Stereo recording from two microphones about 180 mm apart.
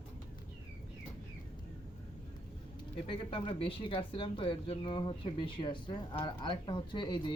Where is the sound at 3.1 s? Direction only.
30° left (ahead or behind).